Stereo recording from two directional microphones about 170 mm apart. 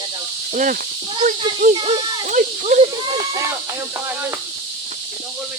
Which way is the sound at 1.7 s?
25° right (ahead or behind).